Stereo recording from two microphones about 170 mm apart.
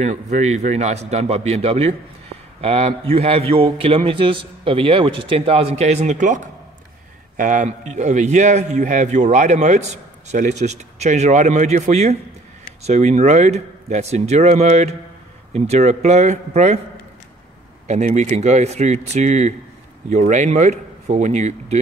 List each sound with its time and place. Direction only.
0.0 s a man's voice: 40° right (ahead or behind)
17.8 s a man's voice: 45° right (ahead or behind)